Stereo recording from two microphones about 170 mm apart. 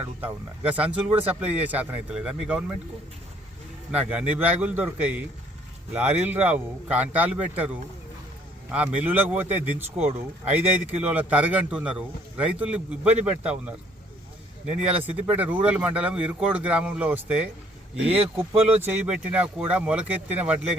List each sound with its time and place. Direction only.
0.2 s a man's voice: 10° right (ahead or behind)
3.9 s a man's voice: 10° right (ahead or behind)
11.1 s a man's voice: 10° right (ahead or behind)
15.0 s a man's voice: 10° right (ahead or behind)
18.1 s speech: 35° right (ahead or behind)
18.9 s a man's voice: 5° right (ahead or behind)